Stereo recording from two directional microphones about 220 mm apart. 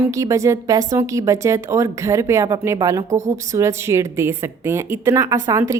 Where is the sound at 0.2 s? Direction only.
15° right (ahead or behind).